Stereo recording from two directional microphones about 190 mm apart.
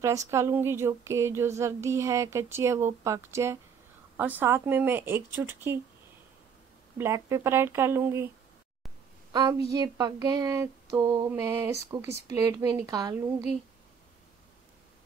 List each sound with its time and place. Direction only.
0.0 s speech: 15° right (ahead or behind)
7.0 s speech: 15° right (ahead or behind)
9.3 s a woman's voice: 20° right (ahead or behind)
9.7 s a sound: 20° right (ahead or behind)
11.2 s speech: 15° right (ahead or behind)
11.9 s a sound: 20° right (ahead or behind)